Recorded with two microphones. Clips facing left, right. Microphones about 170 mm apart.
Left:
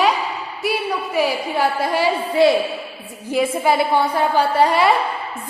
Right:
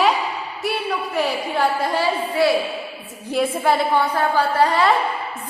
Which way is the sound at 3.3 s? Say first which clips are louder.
Left 1 dB; 5° left (ahead or behind).